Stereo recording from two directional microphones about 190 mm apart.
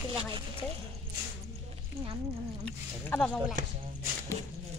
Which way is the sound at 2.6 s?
5° left (ahead or behind).